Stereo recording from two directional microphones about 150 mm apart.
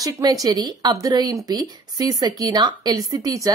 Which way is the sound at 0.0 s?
25° right (ahead or behind).